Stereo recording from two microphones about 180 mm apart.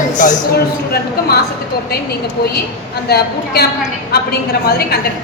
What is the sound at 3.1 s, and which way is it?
Speech, 60° left (ahead or behind).